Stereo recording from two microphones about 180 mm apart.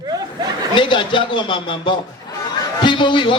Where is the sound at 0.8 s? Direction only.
25° left (ahead or behind).